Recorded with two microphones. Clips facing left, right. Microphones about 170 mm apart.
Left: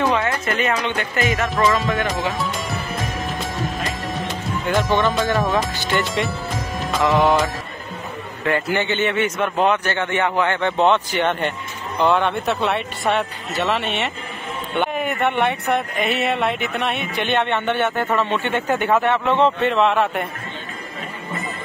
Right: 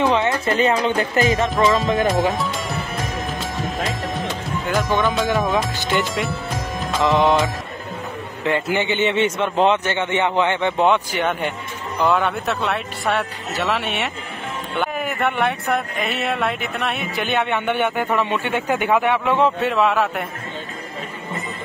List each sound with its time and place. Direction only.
0.0 s a sound: 15° right (ahead or behind)
0.5 s speech: 30° right (ahead or behind)
2.0 s speech: centre (ahead or behind)
3.5 s music: centre (ahead or behind)
4.6 s speech: centre (ahead or behind)
6.1 s music: centre (ahead or behind)
8.5 s a man's voice: 20° right (ahead or behind); by 20.2 s centre (ahead or behind)